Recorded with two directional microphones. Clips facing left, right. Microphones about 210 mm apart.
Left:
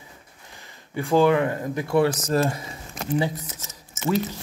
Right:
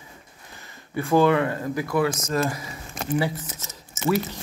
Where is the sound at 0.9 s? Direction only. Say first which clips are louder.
Even; 15° left (ahead or behind).